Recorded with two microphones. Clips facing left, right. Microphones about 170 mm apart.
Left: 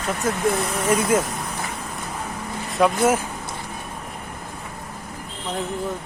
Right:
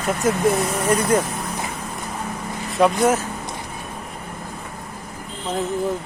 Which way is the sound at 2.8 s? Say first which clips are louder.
Right 1 dB; 10° left (ahead or behind).